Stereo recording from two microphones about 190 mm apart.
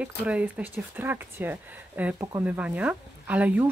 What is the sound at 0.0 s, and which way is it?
Speech, 5° right (ahead or behind).